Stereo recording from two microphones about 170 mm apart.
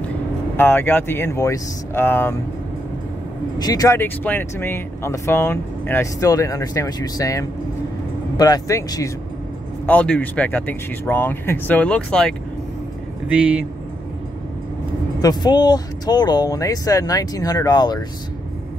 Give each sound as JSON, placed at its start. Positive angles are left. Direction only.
{"t": 0.6, "sound": "speech", "side_deg": 10}
{"t": 3.5, "sound": "speech", "side_deg": 20}
{"t": 15.2, "sound": "speech", "side_deg": 25}